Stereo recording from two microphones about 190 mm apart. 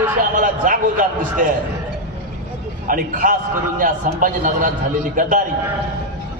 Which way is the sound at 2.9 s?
45° right (ahead or behind).